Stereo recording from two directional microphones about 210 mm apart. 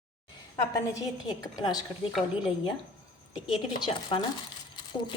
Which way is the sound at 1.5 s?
20° left (ahead or behind).